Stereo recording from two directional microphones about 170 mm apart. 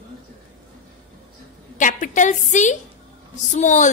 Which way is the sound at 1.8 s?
50° left (ahead or behind).